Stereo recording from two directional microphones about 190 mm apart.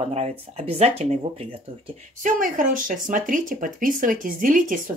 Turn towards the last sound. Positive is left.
turn(degrees=-45)  # may be behind; listen again after turning